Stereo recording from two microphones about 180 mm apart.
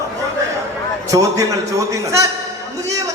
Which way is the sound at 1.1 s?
20° right (ahead or behind).